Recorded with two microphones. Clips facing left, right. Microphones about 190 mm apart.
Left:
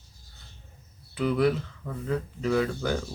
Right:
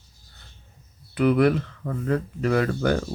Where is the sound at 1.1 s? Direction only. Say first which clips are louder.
Right 5 dB; 65° right (ahead or behind).